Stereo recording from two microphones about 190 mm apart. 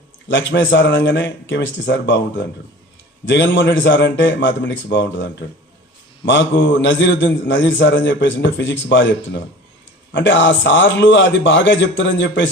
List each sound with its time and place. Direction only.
0.3 s a man's voice: 70° left (ahead or behind)